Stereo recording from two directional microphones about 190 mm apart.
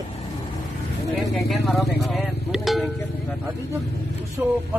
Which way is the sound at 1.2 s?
Centre (ahead or behind).